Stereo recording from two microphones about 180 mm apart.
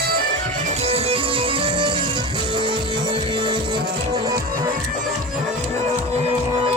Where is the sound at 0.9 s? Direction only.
35° right (ahead or behind).